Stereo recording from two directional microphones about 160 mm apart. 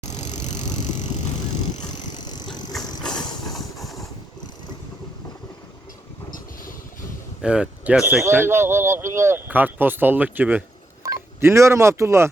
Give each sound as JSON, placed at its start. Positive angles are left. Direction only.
{"t": 0.0, "sound": "vehicle", "side_deg": 45}
{"t": 2.1, "sound": "vehicle", "side_deg": 25}
{"t": 3.0, "sound": "vehicle", "side_deg": 5}
{"t": 7.4, "sound": "speech", "side_deg": -5}